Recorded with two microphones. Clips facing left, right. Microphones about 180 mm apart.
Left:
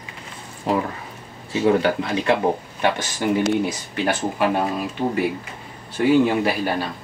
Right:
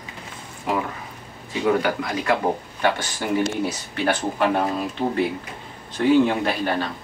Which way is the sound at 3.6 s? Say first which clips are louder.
Even; 15° left (ahead or behind).